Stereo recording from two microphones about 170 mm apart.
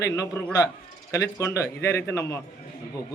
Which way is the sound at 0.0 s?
20° left (ahead or behind).